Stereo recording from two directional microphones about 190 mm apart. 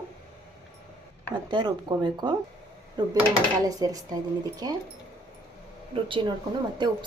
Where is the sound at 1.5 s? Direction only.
25° right (ahead or behind).